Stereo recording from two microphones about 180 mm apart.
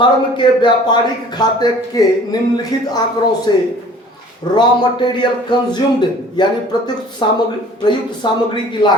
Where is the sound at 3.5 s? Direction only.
25° left (ahead or behind).